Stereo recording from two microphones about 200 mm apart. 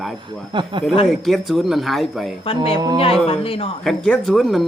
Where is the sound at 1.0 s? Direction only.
Centre (ahead or behind).